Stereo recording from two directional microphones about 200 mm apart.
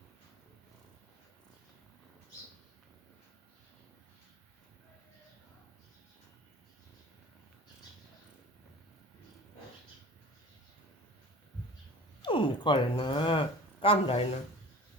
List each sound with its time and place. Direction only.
12.2 s speech: 25° left (ahead or behind)